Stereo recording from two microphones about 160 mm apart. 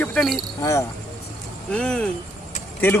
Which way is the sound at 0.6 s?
20° left (ahead or behind).